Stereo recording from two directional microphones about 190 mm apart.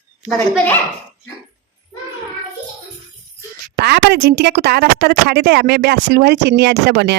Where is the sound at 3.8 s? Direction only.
60° right (ahead or behind).